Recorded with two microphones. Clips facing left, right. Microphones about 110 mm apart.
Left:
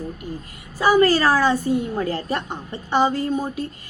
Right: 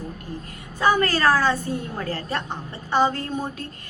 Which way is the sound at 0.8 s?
10° left (ahead or behind).